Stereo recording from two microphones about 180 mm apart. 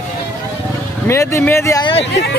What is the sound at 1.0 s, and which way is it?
Speech, 15° left (ahead or behind).